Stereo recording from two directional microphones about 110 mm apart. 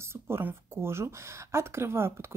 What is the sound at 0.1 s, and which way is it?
Speech, 20° right (ahead or behind).